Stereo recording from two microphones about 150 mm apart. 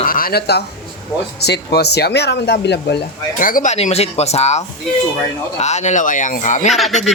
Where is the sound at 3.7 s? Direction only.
45° left (ahead or behind).